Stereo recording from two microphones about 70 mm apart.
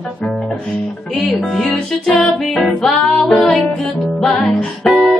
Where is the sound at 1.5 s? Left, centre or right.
Centre.